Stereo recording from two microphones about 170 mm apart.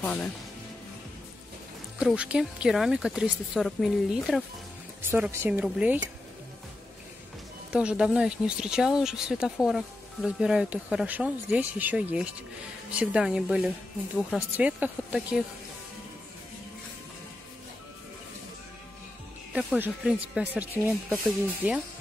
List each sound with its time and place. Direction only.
0.0 s speech: 5° left (ahead or behind)
2.0 s speech: 5° right (ahead or behind)
7.7 s speech: 5° right (ahead or behind)
19.5 s speech: 5° right (ahead or behind)